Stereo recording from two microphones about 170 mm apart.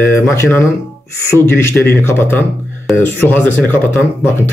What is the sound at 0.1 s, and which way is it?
A man's voice, 15° left (ahead or behind).